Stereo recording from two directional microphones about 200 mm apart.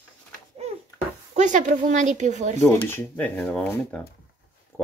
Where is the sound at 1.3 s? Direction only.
40° right (ahead or behind).